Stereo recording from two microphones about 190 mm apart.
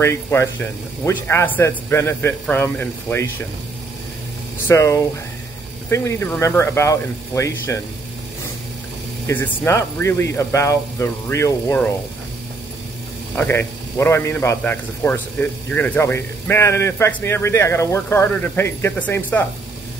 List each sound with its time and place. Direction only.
0.0 s a man's voice: 15° left (ahead or behind)
4.6 s a man's voice: 15° left (ahead or behind)
9.3 s a man's voice: 10° left (ahead or behind)
13.4 s a man's voice: 10° left (ahead or behind)